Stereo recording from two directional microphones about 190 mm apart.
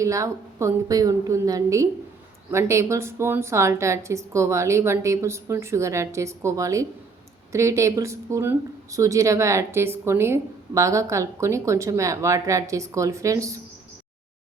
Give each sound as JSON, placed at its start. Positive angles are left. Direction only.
{"t": 0.0, "sound": "speech", "side_deg": -15}